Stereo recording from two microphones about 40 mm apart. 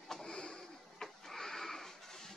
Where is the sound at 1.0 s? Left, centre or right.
Centre.